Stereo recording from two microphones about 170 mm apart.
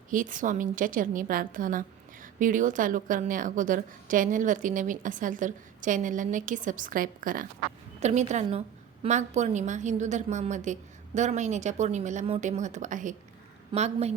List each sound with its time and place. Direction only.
0.1 s speech: 50° right (ahead or behind)
8.0 s a woman's voice: 40° right (ahead or behind)